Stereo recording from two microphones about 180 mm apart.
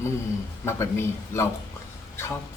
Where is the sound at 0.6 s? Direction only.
15° left (ahead or behind).